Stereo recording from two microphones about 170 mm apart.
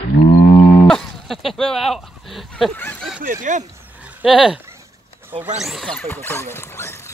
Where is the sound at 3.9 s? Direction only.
5° right (ahead or behind).